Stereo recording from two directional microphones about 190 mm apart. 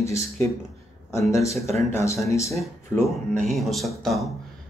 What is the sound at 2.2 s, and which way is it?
Speech, 15° left (ahead or behind).